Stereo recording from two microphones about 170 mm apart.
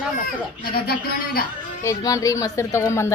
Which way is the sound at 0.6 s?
65° left (ahead or behind).